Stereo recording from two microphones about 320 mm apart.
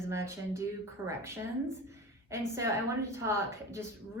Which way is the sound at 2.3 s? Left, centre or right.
Centre.